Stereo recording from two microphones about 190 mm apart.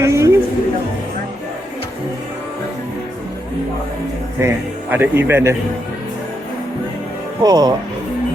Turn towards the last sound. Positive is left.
turn(degrees=-20)  # may be behind; listen again after turning